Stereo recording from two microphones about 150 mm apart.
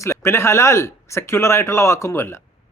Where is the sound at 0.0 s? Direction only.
20° left (ahead or behind).